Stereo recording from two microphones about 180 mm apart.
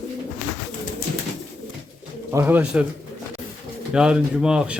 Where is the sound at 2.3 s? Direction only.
15° right (ahead or behind).